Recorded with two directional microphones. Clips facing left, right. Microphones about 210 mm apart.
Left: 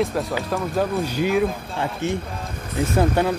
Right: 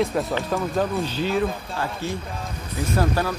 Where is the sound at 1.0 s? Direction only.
10° left (ahead or behind).